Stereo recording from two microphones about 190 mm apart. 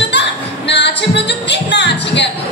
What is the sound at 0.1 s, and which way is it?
Music, 65° left (ahead or behind).